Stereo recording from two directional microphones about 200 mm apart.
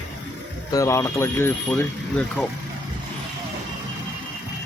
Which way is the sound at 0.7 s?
15° left (ahead or behind).